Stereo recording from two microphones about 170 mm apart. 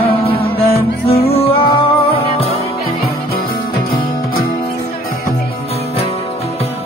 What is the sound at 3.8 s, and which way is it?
Music, 25° left (ahead or behind).